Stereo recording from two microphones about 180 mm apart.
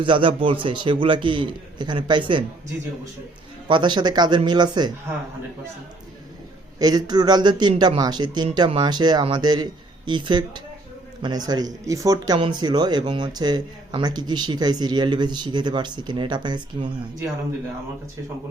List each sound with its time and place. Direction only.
0.0 s speech: 30° right (ahead or behind)
3.7 s speech: 25° right (ahead or behind)
6.7 s speech: 20° right (ahead or behind)